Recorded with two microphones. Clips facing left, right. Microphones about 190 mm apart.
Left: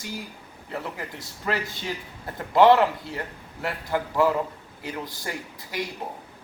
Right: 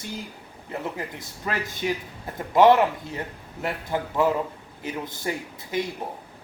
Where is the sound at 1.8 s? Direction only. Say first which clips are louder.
Right 5 dB; 15° right (ahead or behind).